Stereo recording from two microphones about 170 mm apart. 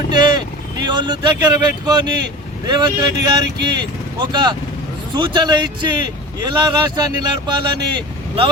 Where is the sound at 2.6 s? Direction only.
25° right (ahead or behind).